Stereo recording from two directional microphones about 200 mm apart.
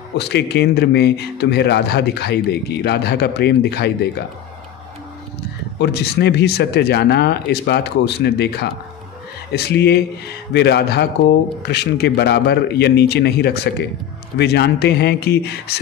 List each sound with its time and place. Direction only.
0.1 s a man's voice: 55° left (ahead or behind)
5.8 s a man's voice: 55° left (ahead or behind)